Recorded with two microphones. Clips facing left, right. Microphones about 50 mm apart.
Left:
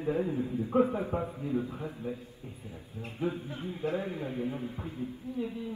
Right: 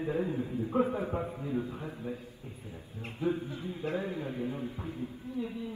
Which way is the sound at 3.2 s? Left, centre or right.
Left.